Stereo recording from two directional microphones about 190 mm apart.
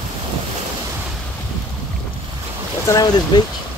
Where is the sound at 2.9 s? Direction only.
20° left (ahead or behind).